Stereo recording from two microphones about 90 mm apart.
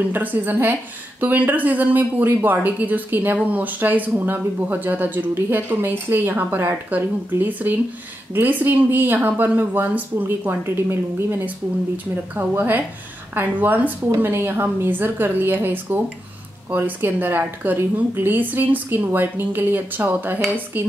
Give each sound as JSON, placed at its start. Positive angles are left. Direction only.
{"t": 0.1, "sound": "speech", "side_deg": -20}